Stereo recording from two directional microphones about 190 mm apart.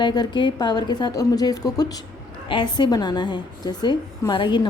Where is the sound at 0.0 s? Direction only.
20° left (ahead or behind).